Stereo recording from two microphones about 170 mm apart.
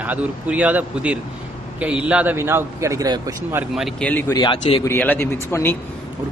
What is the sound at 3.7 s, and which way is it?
Speech, centre (ahead or behind).